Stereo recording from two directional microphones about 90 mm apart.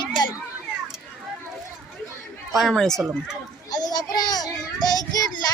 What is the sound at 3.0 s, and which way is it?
Speech, 10° right (ahead or behind).